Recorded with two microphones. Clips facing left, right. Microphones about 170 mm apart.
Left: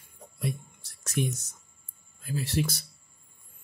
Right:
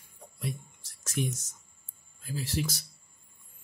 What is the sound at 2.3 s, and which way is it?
Speech, 60° left (ahead or behind).